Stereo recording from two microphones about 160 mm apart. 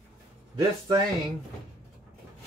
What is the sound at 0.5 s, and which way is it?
Speech, 25° right (ahead or behind).